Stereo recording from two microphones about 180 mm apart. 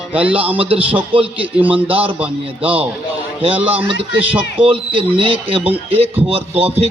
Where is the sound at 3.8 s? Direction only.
30° right (ahead or behind).